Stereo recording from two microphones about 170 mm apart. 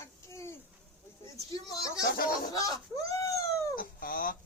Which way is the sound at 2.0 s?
60° left (ahead or behind).